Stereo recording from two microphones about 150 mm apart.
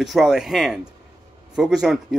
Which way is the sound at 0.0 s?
Centre (ahead or behind).